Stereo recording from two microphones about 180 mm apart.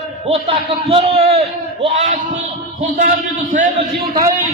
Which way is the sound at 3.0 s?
50° right (ahead or behind).